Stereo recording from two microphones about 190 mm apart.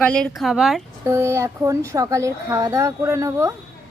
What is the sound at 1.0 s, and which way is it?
Speech, 15° right (ahead or behind).